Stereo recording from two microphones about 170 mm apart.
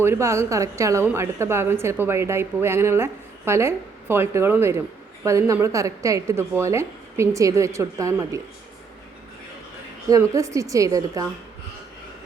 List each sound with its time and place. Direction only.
0.0 s a woman's voice: 15° right (ahead or behind)
10.1 s a woman's voice: 20° right (ahead or behind)